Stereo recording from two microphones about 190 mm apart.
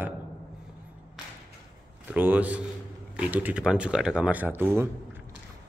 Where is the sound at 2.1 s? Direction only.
10° right (ahead or behind).